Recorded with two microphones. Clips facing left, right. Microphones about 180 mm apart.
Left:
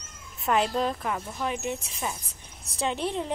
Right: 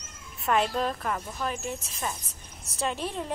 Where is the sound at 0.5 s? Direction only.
15° left (ahead or behind).